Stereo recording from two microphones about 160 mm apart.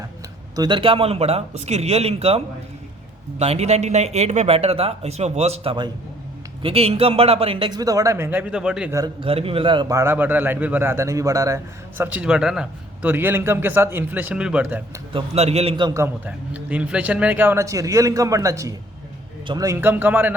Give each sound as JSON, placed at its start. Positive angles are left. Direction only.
{"t": 0.5, "sound": "a man's voice", "side_deg": -25}
{"t": 9.2, "sound": "speech", "side_deg": -35}
{"t": 9.9, "sound": "a man's voice", "side_deg": -15}
{"t": 15.1, "sound": "speech", "side_deg": -40}
{"t": 16.0, "sound": "a man's voice", "side_deg": -10}